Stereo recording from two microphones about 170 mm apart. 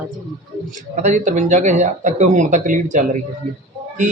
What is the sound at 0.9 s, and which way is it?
A man's voice, 45° right (ahead or behind).